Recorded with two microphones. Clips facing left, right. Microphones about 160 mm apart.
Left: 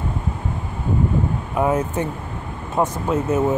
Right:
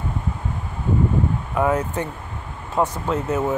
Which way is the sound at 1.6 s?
20° left (ahead or behind).